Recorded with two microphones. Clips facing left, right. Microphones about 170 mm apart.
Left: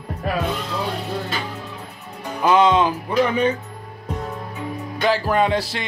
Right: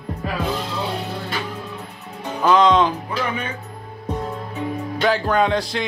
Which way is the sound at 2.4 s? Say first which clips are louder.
Even; 10° left (ahead or behind).